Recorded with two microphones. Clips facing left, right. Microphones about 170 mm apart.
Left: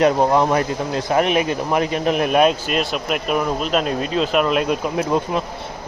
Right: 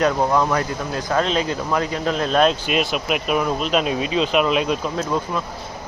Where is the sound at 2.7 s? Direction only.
Centre (ahead or behind).